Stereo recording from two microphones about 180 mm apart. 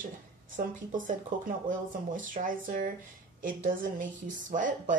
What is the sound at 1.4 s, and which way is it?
A woman's voice, 45° right (ahead or behind).